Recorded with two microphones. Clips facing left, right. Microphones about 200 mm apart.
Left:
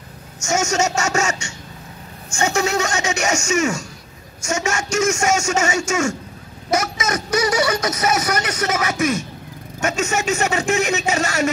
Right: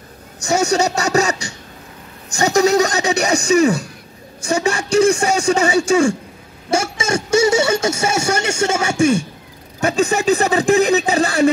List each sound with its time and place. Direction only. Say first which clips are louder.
0.4 s a man's voice: right 4 dB; 35° right (ahead or behind)